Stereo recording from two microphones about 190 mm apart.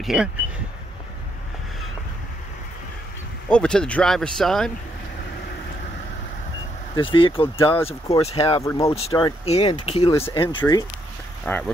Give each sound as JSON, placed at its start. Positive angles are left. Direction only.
{"t": 0.0, "sound": "speech", "side_deg": -5}
{"t": 3.4, "sound": "speech", "side_deg": 5}
{"t": 7.0, "sound": "speech", "side_deg": 25}
{"t": 11.4, "sound": "speech", "side_deg": 10}